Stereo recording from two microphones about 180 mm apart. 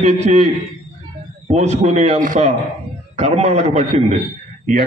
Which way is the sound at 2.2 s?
50° right (ahead or behind).